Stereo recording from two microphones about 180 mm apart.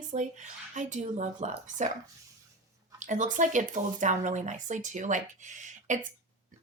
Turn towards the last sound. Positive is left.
turn(degrees=-45)  # may be behind; listen again after turning